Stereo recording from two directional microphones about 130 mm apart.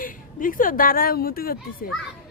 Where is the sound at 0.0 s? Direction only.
90° left.